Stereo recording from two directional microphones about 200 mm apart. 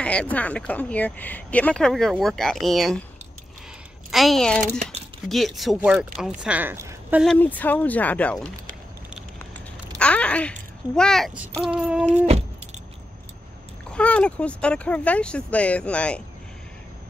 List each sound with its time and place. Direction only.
0.0 s speech: 5° left (ahead or behind)
4.1 s speech: centre (ahead or behind)
7.2 s speech: 10° left (ahead or behind)
9.9 s a child's voice: 5° left (ahead or behind)
12.3 s keys jangling: 30° right (ahead or behind)
13.9 s speech: 5° left (ahead or behind)